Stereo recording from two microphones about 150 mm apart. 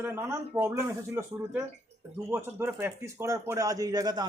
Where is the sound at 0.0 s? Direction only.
15° right (ahead or behind).